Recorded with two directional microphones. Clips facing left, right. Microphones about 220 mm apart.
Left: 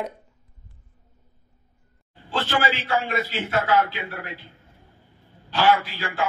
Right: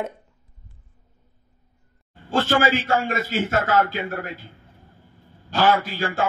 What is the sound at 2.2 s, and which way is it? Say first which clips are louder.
A man's voice: right 5 dB; 45° right (ahead or behind).